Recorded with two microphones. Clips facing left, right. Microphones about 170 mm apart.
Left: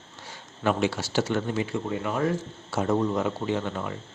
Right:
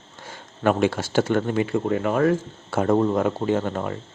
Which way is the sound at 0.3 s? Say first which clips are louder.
Right 5 dB; 50° right (ahead or behind).